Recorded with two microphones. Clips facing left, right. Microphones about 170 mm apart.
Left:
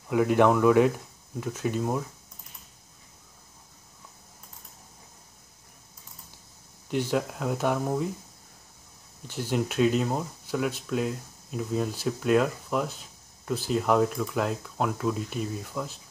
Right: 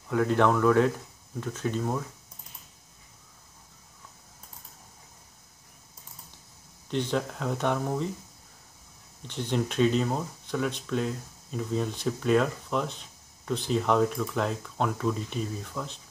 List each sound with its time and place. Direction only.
0.1 s speech: 10° left (ahead or behind)
6.9 s speech: 10° left (ahead or behind)
9.3 s speech: 5° left (ahead or behind)